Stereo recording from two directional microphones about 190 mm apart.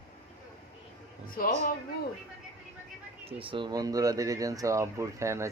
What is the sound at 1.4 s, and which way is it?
Speech, 50° left (ahead or behind).